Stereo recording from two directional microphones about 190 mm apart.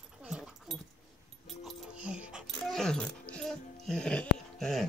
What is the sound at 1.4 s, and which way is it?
Music, centre (ahead or behind).